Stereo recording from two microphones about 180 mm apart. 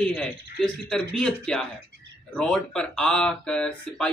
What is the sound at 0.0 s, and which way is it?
A man's voice, 5° left (ahead or behind).